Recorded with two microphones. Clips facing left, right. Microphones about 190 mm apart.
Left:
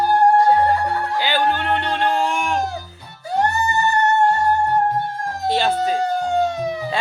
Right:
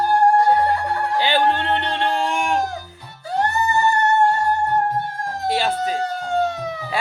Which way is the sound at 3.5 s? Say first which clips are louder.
Right 1 dB; 15° left (ahead or behind).